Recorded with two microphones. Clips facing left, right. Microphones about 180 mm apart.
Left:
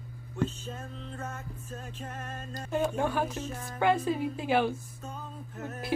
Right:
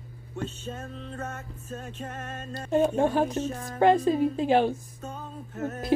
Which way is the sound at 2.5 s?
30° right (ahead or behind).